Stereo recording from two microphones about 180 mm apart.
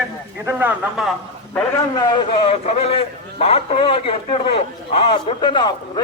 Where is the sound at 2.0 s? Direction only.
30° left (ahead or behind).